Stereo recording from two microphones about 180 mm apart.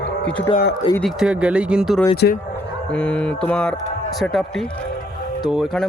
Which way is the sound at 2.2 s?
70° left (ahead or behind).